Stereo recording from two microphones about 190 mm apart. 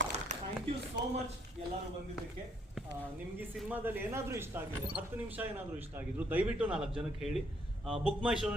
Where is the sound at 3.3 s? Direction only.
10° right (ahead or behind).